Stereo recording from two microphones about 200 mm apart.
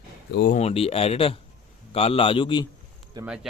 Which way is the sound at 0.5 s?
30° left (ahead or behind).